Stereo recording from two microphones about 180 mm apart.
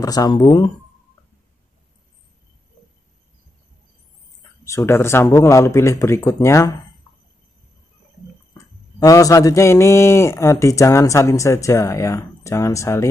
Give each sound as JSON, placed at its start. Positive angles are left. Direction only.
{"t": 0.0, "sound": "speech", "side_deg": 20}
{"t": 4.6, "sound": "a man's voice", "side_deg": 15}
{"t": 9.0, "sound": "a man's voice", "side_deg": 20}